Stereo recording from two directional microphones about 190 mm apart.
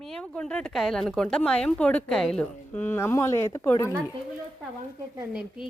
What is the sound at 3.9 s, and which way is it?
Speech, 15° right (ahead or behind).